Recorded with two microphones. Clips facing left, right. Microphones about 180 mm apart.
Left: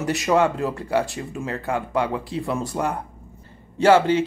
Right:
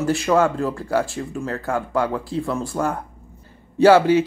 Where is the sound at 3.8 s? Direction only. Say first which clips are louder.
Right 3 dB; 10° right (ahead or behind).